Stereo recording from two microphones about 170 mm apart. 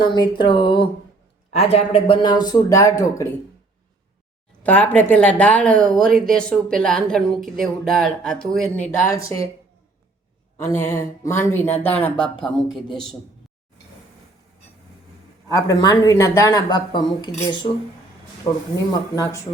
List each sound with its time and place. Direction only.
0.0 s speech: 25° left (ahead or behind)
4.6 s speech: 10° left (ahead or behind)
9.2 s speech: 20° left (ahead or behind)
10.8 s speech: 15° left (ahead or behind)
15.4 s speech: 20° left (ahead or behind)